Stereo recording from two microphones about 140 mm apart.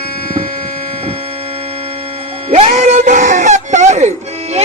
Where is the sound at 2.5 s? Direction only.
50° right (ahead or behind).